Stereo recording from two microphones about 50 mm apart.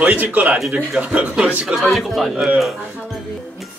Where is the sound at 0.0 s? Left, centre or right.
Right.